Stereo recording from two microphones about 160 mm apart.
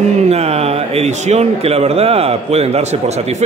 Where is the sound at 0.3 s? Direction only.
40° right (ahead or behind).